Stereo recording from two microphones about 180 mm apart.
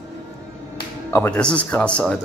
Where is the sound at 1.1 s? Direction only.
10° left (ahead or behind).